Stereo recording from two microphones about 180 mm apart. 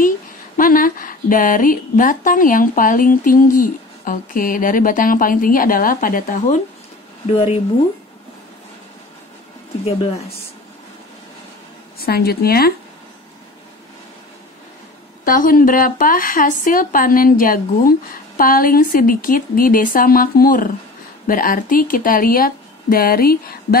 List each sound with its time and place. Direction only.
0.6 s speech: 50° left (ahead or behind)
12.0 s a woman's voice: 60° left (ahead or behind)
15.2 s speech: 50° left (ahead or behind)